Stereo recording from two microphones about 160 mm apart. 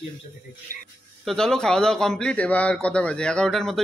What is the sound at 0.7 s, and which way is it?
Speech, 55° left (ahead or behind).